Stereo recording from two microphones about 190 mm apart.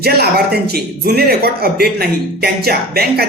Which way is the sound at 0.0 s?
55° right (ahead or behind).